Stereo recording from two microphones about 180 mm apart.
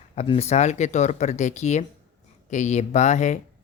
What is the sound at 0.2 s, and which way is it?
Speech, 35° left (ahead or behind).